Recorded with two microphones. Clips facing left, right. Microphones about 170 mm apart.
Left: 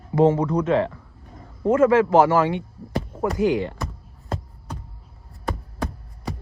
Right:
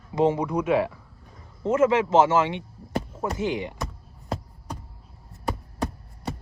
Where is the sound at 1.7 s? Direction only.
20° right (ahead or behind).